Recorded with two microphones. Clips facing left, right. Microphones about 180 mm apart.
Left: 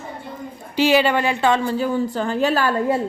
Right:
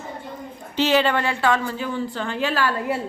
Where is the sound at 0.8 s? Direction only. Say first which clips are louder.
Left 3 dB; 10° left (ahead or behind).